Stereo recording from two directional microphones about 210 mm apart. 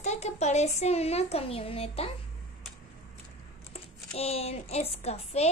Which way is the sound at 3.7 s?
30° left (ahead or behind).